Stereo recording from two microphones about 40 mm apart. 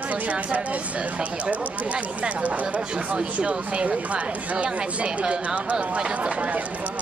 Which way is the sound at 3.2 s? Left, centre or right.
Right.